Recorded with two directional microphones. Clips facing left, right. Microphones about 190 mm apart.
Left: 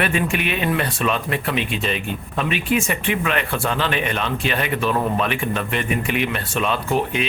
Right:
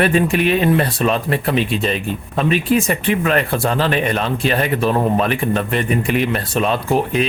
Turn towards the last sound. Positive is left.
turn(degrees=-40)  # may be behind; listen again after turning